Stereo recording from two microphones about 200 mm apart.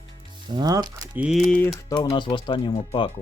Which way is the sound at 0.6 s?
20° right (ahead or behind).